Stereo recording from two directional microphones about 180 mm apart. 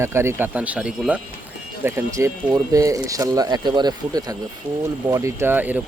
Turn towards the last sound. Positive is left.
turn(degrees=-10)  # may be behind; listen again after turning